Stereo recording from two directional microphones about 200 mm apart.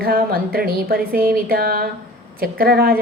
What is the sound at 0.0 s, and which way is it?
A woman's voice, 50° right (ahead or behind).